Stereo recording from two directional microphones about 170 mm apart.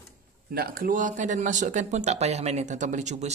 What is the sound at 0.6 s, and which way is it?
Speech, 60° right (ahead or behind).